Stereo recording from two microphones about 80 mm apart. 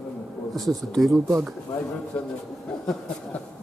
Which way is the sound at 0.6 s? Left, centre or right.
Centre.